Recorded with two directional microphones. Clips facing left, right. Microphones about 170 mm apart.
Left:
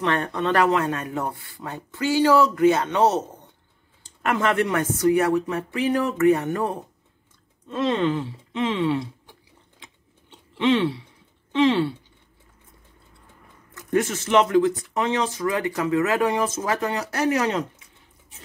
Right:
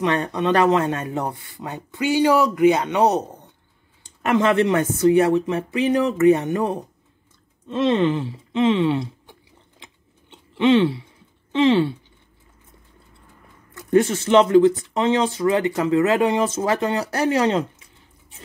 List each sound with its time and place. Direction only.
0.0 s speech: 20° right (ahead or behind)
10.6 s speech: 25° right (ahead or behind)
13.8 s speech: 30° right (ahead or behind)